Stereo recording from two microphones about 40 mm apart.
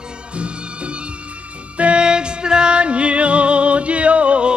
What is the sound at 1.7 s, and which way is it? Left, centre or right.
Music, right.